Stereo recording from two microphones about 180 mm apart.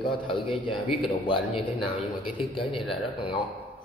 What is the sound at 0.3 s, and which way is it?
Speech, 30° left (ahead or behind).